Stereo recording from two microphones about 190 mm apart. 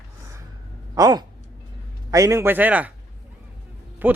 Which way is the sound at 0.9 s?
20° right (ahead or behind).